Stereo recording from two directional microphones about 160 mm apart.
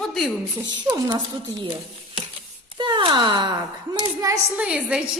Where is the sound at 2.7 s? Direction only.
30° right (ahead or behind).